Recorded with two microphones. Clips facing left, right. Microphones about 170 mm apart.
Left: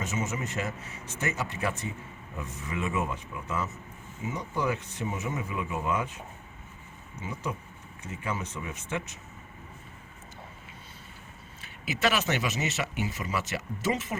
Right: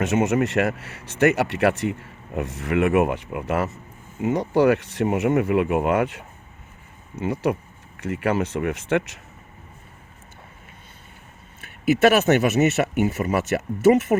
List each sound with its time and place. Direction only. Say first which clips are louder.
0.0 s speech: right 12 dB; 70° right (ahead or behind)
11.6 s speech: right 12 dB; 55° right (ahead or behind)